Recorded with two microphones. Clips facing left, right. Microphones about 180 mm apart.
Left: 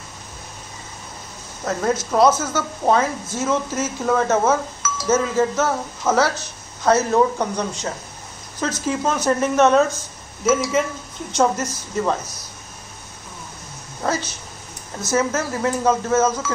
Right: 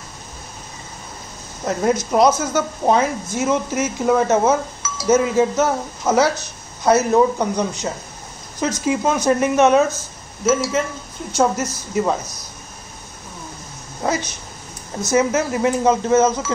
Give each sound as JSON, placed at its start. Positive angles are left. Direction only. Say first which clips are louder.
{"t": 1.7, "sound": "a woman's voice", "louder": "right 3 dB", "side_deg": -15}
{"t": 10.4, "sound": "a woman's voice", "louder": "even", "side_deg": 0}
{"t": 14.0, "sound": "a woman's voice", "louder": "right 2 dB", "side_deg": -15}